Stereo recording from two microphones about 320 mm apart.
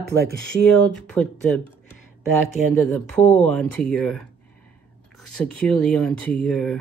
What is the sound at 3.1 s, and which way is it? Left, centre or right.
Speech, centre.